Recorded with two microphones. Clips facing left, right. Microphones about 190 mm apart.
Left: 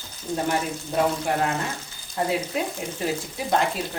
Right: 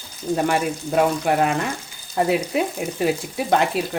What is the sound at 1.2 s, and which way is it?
Speech, 65° right (ahead or behind).